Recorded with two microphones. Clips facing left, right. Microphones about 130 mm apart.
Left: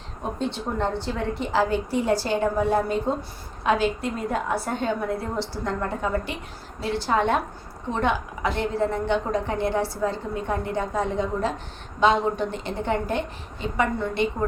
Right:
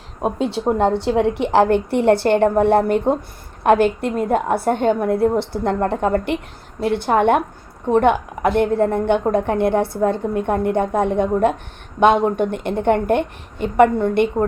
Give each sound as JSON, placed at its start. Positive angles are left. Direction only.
{"t": 0.6, "sound": "a woman's voice", "side_deg": -55}
{"t": 1.0, "sound": "a woman's voice", "side_deg": -75}